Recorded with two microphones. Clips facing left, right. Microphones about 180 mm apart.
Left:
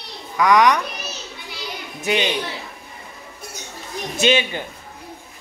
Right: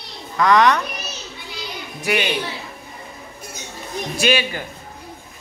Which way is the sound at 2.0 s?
20° left (ahead or behind).